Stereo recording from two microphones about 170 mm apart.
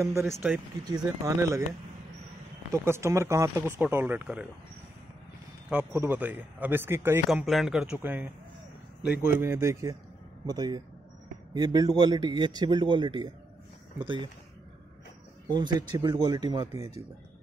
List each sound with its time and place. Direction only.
0.0 s speech: 15° right (ahead or behind)
5.7 s speech: 10° right (ahead or behind)
7.2 s a man's voice: centre (ahead or behind); by 14.3 s 30° right (ahead or behind)
15.5 s a man's voice: 25° right (ahead or behind)